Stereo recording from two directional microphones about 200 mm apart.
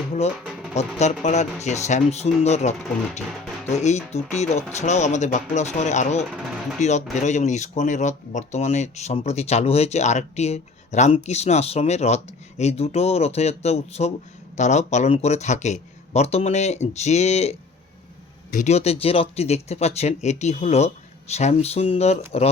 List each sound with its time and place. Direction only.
0.7 s speech: 35° left (ahead or behind)